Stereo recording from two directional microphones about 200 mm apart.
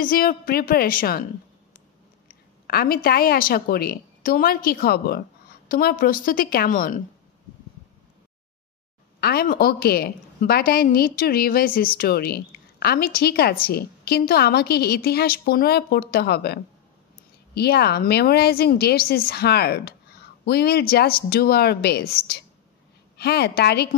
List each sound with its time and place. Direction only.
0.0 s a woman's voice: 45° left (ahead or behind)
2.2 s a woman's voice: 50° left (ahead or behind)
9.2 s a woman's voice: 50° left (ahead or behind)
17.6 s a woman's voice: 55° left (ahead or behind)